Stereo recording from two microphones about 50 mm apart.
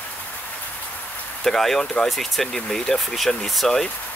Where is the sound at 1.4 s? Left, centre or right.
Centre.